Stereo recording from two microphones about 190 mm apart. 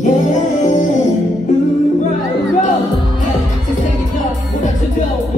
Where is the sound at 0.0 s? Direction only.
40° left (ahead or behind).